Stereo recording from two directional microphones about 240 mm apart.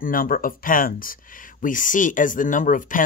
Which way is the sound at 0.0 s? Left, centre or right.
Left.